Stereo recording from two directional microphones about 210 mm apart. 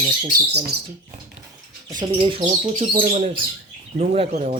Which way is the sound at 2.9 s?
40° right (ahead or behind).